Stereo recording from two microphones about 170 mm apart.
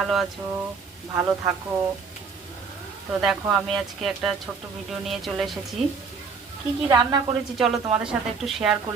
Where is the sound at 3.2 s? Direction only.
Centre (ahead or behind).